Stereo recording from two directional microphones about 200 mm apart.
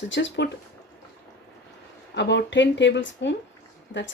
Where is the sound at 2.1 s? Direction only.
60° left (ahead or behind).